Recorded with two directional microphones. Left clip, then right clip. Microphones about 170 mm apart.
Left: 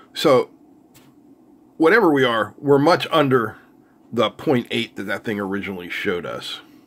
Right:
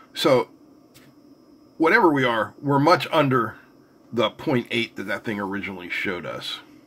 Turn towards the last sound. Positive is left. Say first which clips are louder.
# left 3 dB
turn(degrees=25)  # may be behind; listen again after turning